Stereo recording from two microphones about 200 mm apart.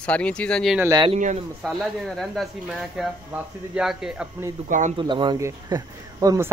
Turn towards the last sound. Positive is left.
turn(degrees=-15)  # may be behind; listen again after turning